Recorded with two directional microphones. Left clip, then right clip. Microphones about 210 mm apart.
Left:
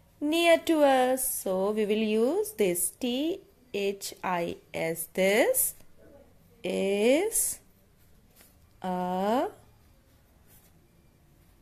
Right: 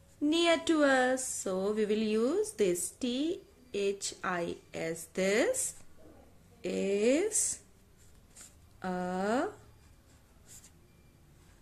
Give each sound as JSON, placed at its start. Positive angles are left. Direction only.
{"t": 0.2, "sound": "speech", "side_deg": 20}
{"t": 8.7, "sound": "speech", "side_deg": 20}